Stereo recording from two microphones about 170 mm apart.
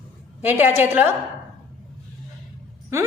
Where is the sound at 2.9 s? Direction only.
15° right (ahead or behind).